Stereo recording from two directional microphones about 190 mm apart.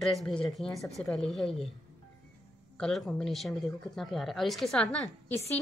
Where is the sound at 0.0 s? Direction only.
Centre (ahead or behind).